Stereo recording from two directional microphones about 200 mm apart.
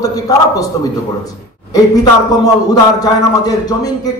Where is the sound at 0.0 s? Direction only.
20° left (ahead or behind).